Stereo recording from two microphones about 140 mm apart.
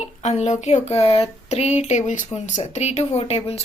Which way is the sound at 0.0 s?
55° left (ahead or behind).